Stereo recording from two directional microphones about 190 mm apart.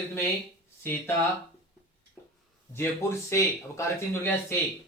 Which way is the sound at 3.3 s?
15° left (ahead or behind).